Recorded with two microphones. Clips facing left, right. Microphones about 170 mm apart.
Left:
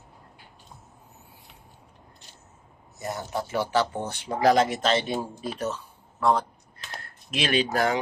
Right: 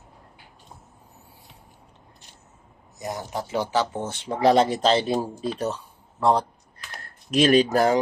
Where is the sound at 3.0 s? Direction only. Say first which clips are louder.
Even; 15° right (ahead or behind).